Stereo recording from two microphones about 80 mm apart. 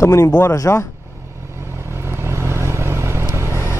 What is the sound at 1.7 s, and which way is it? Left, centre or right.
Vehicle, right.